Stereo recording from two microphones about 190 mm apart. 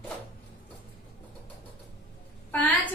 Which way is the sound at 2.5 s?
10° left (ahead or behind).